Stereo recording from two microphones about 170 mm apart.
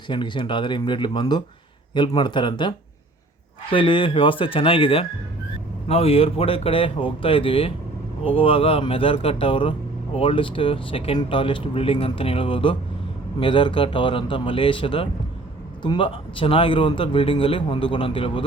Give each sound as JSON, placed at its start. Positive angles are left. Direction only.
{"t": 0.1, "sound": "speech", "side_deg": 30}